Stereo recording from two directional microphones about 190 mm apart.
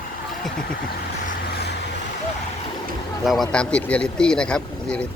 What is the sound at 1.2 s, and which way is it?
Vehicle, 60° left (ahead or behind).